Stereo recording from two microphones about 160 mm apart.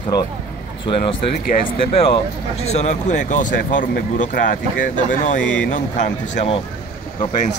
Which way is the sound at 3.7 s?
55° left (ahead or behind).